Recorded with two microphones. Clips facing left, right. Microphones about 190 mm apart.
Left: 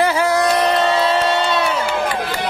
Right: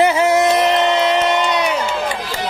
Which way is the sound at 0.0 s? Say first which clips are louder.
Right 3 dB; 20° right (ahead or behind).